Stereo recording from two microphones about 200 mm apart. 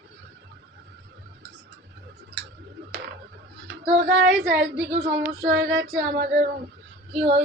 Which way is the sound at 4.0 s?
55° right (ahead or behind).